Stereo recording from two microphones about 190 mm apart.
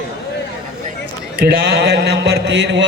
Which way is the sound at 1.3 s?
60° right (ahead or behind).